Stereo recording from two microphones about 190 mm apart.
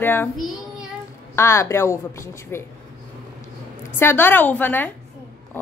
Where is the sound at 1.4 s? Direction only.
15° left (ahead or behind).